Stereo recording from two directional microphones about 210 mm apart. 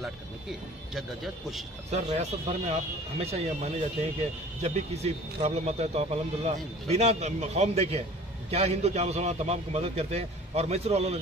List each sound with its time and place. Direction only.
0.0 s speech: centre (ahead or behind)
1.9 s a man's voice: 30° right (ahead or behind)